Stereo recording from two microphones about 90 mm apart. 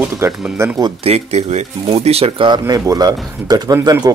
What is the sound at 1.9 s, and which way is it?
Speech, 80° right.